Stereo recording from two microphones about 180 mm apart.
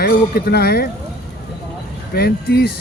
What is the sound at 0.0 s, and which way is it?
Speech, 60° left (ahead or behind).